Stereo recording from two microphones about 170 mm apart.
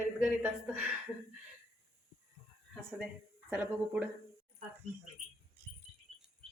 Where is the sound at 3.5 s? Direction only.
10° right (ahead or behind).